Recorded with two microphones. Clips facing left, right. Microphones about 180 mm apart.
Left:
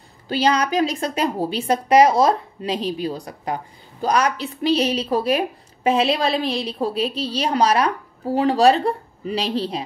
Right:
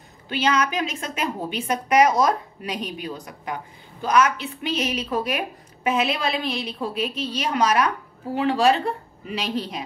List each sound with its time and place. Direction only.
0.3 s a woman's voice: 35° left (ahead or behind)